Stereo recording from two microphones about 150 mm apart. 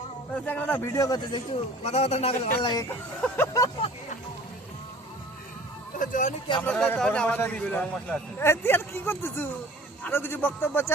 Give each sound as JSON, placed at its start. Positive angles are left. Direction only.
{"t": 0.3, "sound": "a man's voice", "side_deg": 10}
{"t": 0.9, "sound": "speech", "side_deg": 25}
{"t": 1.8, "sound": "a man's voice", "side_deg": 45}
{"t": 3.2, "sound": "a man's voice", "side_deg": 10}
{"t": 6.0, "sound": "speech", "side_deg": 60}
{"t": 6.7, "sound": "a man's voice", "side_deg": 10}